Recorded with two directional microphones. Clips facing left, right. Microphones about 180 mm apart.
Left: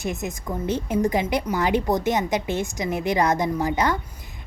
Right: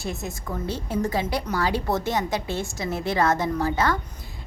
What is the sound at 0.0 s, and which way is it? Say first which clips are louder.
A woman's voice: left 3 dB; 15° left (ahead or behind).